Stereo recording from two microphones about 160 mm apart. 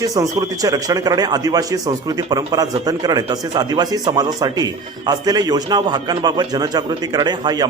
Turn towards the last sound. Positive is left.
turn(degrees=-25)  # may be behind; listen again after turning